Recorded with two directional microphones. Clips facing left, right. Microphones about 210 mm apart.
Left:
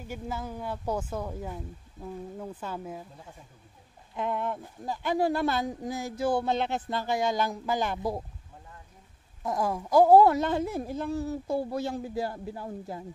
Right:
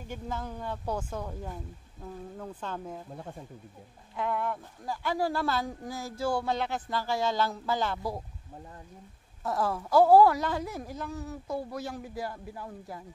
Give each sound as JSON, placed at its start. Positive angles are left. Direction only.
{"t": 0.1, "sound": "speech", "side_deg": 10}
{"t": 4.2, "sound": "speech", "side_deg": 20}
{"t": 9.4, "sound": "speech", "side_deg": 15}